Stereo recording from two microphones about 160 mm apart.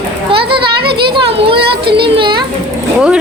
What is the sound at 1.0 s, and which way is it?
Speech, 30° right (ahead or behind).